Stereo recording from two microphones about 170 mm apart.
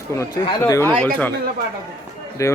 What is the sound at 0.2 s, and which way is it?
Speech, 25° left (ahead or behind).